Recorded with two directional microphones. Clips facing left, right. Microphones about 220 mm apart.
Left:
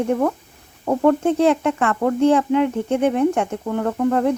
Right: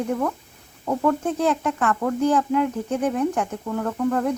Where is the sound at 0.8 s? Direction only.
35° left (ahead or behind).